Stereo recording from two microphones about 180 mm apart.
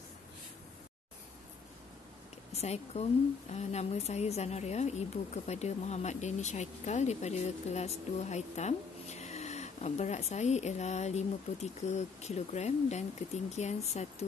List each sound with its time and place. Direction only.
2.5 s a woman's voice: 35° left (ahead or behind)